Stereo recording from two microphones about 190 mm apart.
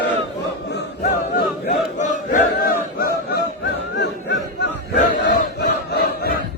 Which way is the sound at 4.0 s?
65° left (ahead or behind).